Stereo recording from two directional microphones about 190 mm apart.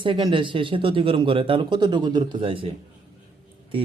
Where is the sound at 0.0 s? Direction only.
25° right (ahead or behind).